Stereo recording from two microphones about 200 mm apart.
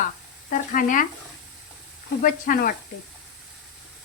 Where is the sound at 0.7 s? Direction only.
40° left (ahead or behind).